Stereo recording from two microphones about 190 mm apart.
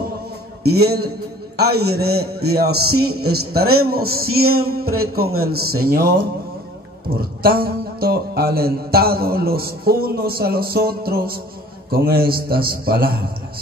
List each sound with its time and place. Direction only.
0.7 s a man's voice: 55° right (ahead or behind)
4.1 s speech: 90° right
4.7 s a man's voice: 55° right (ahead or behind)
7.2 s a man's voice: 55° right (ahead or behind)